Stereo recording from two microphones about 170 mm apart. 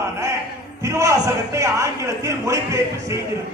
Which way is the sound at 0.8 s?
15° right (ahead or behind).